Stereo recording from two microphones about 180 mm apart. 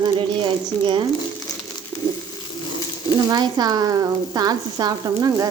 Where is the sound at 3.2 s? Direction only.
20° right (ahead or behind).